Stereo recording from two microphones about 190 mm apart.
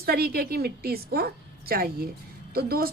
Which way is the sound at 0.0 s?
55° right (ahead or behind).